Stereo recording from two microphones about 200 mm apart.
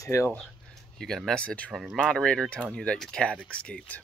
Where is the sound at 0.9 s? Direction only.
Centre (ahead or behind).